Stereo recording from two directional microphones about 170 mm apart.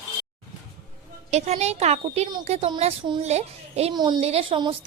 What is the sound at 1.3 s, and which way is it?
A woman's voice, 40° right (ahead or behind).